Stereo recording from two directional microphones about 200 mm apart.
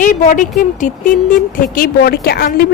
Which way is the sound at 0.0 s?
40° left (ahead or behind).